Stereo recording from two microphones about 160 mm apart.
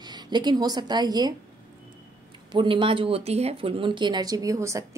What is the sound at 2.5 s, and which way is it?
Speech, 30° right (ahead or behind).